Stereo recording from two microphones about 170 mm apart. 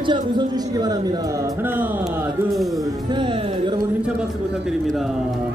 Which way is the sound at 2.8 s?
25° right (ahead or behind).